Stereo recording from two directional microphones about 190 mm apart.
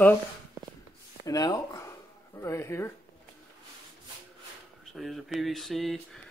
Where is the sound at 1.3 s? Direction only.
20° left (ahead or behind).